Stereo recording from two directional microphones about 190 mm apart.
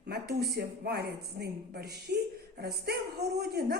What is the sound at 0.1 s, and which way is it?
A man's voice, 55° right (ahead or behind).